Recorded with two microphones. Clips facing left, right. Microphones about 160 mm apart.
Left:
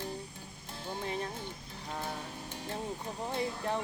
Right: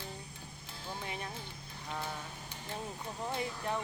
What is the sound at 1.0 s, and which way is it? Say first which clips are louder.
Music: left 7 dB; 35° left (ahead or behind).